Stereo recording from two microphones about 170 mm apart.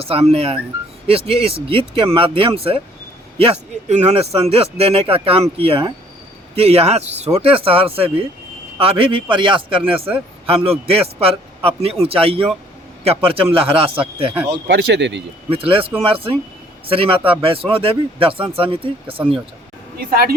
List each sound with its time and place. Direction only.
0.0 s a man's voice: 35° right (ahead or behind)
14.5 s speech: 85° right
15.5 s a man's voice: 35° right (ahead or behind)
20.0 s speech: 60° right (ahead or behind)